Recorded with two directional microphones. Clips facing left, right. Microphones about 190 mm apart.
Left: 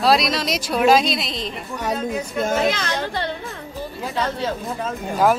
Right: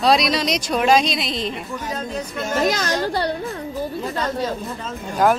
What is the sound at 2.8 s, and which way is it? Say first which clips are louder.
Speech: right 3 dB; 40° right (ahead or behind).